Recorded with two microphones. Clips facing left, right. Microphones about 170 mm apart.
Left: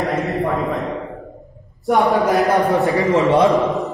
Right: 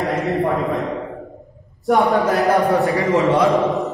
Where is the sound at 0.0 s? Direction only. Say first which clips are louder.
Right 1 dB; centre (ahead or behind).